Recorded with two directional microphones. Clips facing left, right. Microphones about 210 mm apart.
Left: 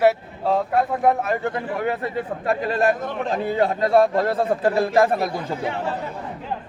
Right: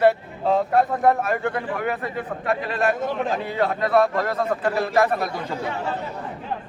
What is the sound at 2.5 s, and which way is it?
A man's voice, 30° left (ahead or behind).